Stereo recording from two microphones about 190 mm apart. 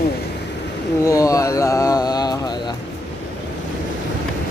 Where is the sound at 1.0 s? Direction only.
15° left (ahead or behind).